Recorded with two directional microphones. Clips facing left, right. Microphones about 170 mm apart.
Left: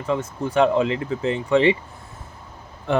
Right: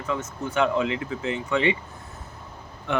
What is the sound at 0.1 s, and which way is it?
Speech, 30° left (ahead or behind).